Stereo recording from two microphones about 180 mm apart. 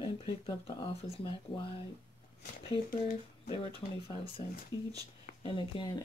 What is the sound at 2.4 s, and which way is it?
Speech, 50° left (ahead or behind).